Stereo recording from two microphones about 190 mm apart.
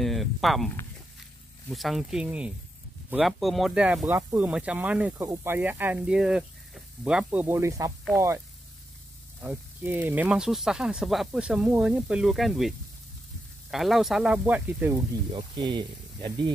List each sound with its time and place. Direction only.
0.0 s speech: centre (ahead or behind)
1.7 s speech: centre (ahead or behind)
9.4 s speech: 10° right (ahead or behind)
15.3 s speech: 20° right (ahead or behind)